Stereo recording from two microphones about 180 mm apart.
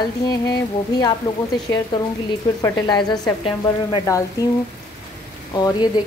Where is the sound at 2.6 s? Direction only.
20° left (ahead or behind).